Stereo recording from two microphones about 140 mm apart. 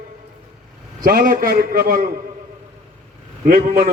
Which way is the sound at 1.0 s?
90° right.